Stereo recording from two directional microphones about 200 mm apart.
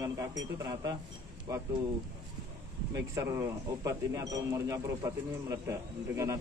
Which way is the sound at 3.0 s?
15° right (ahead or behind).